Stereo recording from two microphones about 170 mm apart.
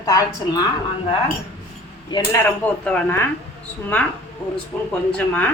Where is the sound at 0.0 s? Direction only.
20° left (ahead or behind).